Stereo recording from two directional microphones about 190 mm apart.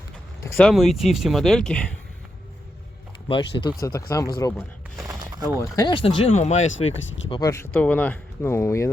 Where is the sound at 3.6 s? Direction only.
20° left (ahead or behind).